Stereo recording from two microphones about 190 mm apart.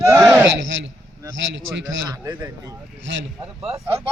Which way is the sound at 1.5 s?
70° right (ahead or behind).